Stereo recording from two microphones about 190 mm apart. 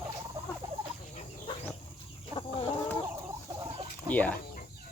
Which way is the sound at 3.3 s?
20° right (ahead or behind).